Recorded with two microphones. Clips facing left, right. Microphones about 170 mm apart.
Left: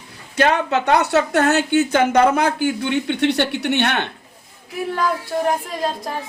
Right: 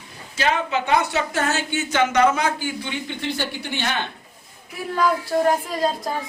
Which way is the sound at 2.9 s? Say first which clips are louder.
Left 9 dB; 70° left (ahead or behind).